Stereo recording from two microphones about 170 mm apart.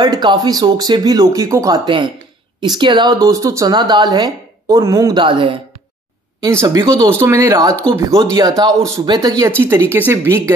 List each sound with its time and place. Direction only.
0.0 s speech: 25° right (ahead or behind)
6.4 s speech: 20° right (ahead or behind)